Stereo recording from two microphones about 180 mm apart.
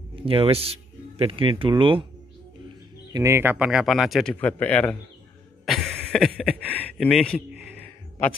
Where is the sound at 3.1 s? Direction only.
20° right (ahead or behind); by 7.4 s 5° left (ahead or behind).